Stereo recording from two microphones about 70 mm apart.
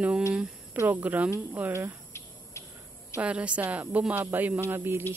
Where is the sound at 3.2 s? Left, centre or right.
Centre.